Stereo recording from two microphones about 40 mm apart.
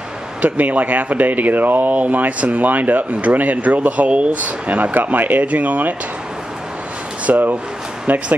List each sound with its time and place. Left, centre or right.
0.4 s speech: right
4.9 s speech: right
7.2 s speech: right